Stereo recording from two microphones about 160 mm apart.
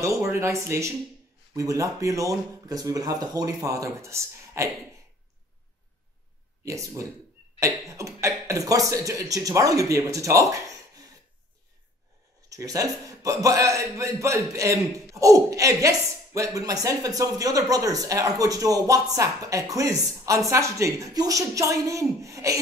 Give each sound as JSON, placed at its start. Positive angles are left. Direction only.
{"t": 0.0, "sound": "speech", "side_deg": -20}
{"t": 6.6, "sound": "speech", "side_deg": -20}
{"t": 12.4, "sound": "speech", "side_deg": -20}